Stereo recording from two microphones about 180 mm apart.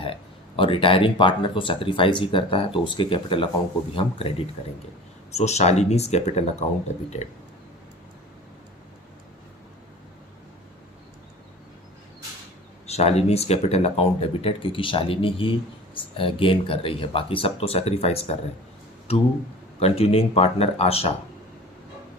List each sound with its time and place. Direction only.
0.0 s speech: 30° left (ahead or behind)
5.3 s speech: 35° left (ahead or behind)
12.8 s speech: 35° left (ahead or behind)
19.8 s speech: 35° left (ahead or behind)